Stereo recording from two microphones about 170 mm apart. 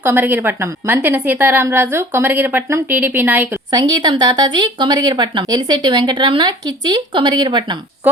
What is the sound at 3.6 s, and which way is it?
Speech, 20° right (ahead or behind).